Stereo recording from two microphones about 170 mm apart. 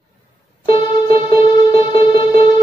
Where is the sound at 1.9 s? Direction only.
30° left (ahead or behind).